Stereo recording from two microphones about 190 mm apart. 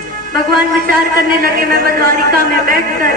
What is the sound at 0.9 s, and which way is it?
Speech, 50° right (ahead or behind).